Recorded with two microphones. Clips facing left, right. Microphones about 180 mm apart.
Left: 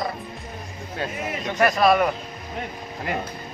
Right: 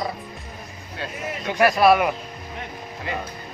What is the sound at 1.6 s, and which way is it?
Speech, 5° right (ahead or behind).